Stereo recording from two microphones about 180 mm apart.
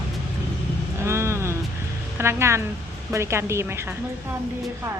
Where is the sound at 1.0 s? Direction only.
15° right (ahead or behind).